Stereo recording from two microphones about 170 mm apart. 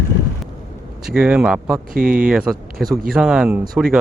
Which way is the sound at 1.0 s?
5° right (ahead or behind).